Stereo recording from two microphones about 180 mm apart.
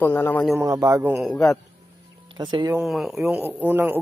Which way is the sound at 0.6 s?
15° right (ahead or behind).